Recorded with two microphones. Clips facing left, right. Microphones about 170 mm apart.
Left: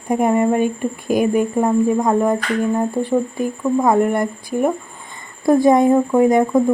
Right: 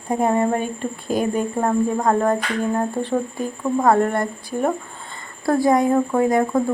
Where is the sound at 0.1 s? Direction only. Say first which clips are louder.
Left 3 dB; 15° left (ahead or behind).